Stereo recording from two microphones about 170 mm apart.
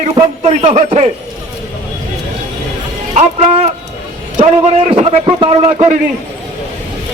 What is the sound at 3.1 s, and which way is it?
A man's voice, 45° right (ahead or behind).